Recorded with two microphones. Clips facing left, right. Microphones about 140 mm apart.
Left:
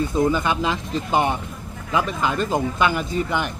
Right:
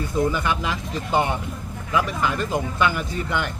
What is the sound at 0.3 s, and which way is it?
Speech, 25° left (ahead or behind).